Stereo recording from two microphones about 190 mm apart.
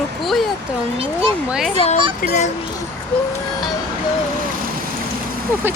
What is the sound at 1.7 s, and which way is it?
Speech, 35° left (ahead or behind).